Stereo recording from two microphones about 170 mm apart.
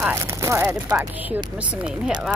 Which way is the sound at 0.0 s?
15° right (ahead or behind).